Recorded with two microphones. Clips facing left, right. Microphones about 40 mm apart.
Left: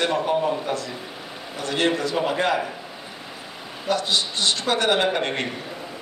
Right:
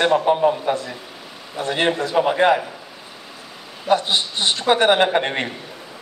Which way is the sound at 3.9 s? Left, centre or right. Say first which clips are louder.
Right 4 dB; right.